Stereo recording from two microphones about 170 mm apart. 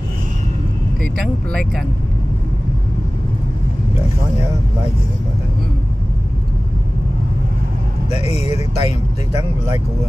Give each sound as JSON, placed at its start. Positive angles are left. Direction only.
{"t": 8.1, "sound": "speech", "side_deg": 40}